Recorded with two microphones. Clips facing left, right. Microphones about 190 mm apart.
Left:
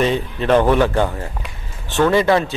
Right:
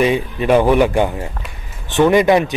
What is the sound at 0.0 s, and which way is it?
Speech, 10° right (ahead or behind).